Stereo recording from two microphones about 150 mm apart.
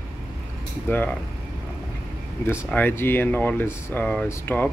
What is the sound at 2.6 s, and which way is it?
Speech, 10° left (ahead or behind).